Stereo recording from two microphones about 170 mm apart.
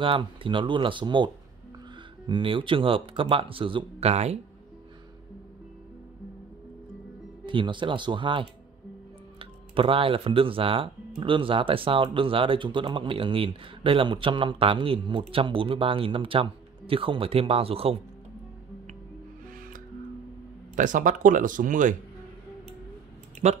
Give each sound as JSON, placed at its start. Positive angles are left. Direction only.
{"t": 0.0, "sound": "speech", "side_deg": -30}
{"t": 7.4, "sound": "speech", "side_deg": -30}
{"t": 20.7, "sound": "speech", "side_deg": -50}
{"t": 23.4, "sound": "speech", "side_deg": -40}